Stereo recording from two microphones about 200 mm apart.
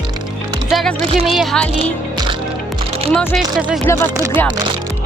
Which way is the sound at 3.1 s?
Centre (ahead or behind).